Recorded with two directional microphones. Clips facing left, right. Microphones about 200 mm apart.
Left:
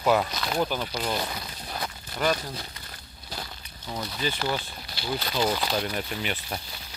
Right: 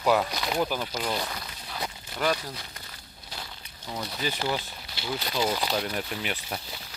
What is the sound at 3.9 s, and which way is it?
Speech, 10° right (ahead or behind).